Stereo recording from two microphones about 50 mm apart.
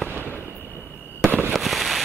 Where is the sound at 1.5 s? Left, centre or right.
Centre.